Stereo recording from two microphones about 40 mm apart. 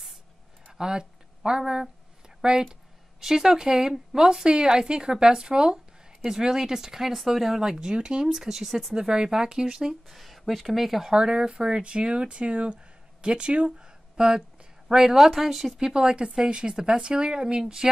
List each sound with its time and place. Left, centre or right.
0.7 s a sound: centre
2.4 s speech: centre
7.8 s speech: right
14.9 s speech: centre
15.8 s a woman's voice: centre